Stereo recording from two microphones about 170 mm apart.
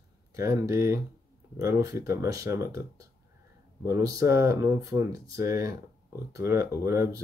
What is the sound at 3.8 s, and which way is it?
Speech, 15° right (ahead or behind).